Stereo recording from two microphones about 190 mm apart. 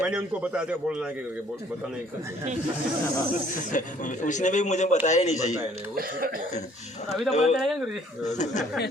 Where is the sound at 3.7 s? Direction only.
40° left (ahead or behind).